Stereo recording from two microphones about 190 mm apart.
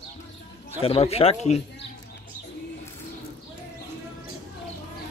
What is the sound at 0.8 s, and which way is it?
Speech, 30° left (ahead or behind).